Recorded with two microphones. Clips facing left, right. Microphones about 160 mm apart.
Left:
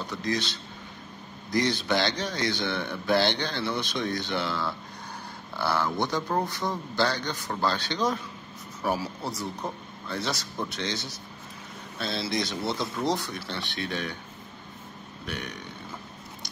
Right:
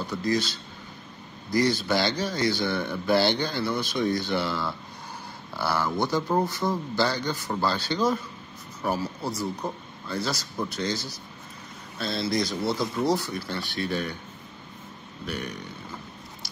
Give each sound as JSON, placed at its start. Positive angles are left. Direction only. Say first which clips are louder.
{"t": 0.0, "sound": "a man's voice", "louder": "right 4 dB", "side_deg": -5}
{"t": 15.2, "sound": "a man's voice", "louder": "right 3 dB", "side_deg": 0}